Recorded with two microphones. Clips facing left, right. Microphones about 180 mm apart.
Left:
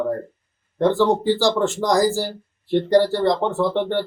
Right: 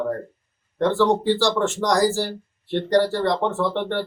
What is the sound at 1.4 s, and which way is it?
Speech, 15° left (ahead or behind).